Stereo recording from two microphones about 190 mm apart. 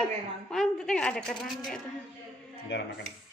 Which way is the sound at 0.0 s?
5° left (ahead or behind).